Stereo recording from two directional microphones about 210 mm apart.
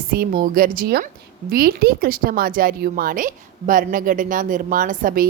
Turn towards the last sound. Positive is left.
turn(degrees=-40)  # may be behind; listen again after turning